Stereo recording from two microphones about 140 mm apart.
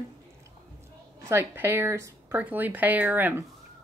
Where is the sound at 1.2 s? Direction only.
15° right (ahead or behind).